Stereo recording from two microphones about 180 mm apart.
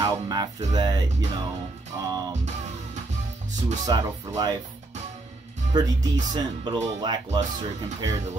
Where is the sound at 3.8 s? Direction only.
20° right (ahead or behind).